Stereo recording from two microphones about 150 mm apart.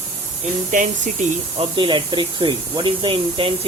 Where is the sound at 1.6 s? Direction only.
35° right (ahead or behind).